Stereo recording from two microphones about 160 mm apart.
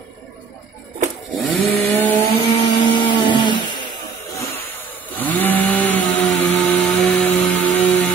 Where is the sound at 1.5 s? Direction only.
10° left (ahead or behind).